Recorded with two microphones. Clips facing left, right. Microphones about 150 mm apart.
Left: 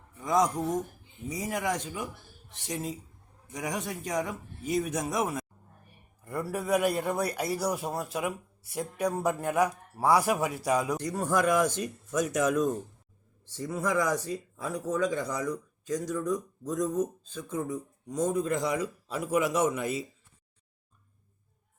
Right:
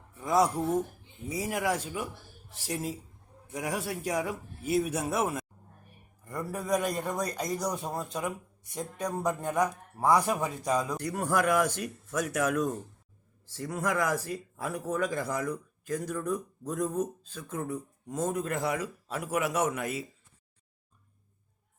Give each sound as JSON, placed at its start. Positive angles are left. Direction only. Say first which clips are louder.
{"t": 0.1, "sound": "a man's voice", "louder": "even", "side_deg": -5}
{"t": 11.0, "sound": "speech", "louder": "left 1 dB", "side_deg": -10}
{"t": 13.9, "sound": "speech", "louder": "left 3 dB", "side_deg": -5}
{"t": 19.6, "sound": "a man's voice", "louder": "left 3 dB", "side_deg": 30}